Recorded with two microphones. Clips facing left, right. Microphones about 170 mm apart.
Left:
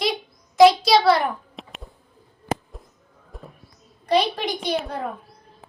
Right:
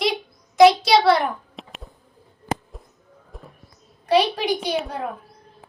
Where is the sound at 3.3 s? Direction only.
Centre (ahead or behind).